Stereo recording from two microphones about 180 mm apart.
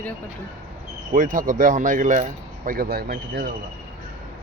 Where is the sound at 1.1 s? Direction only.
50° right (ahead or behind).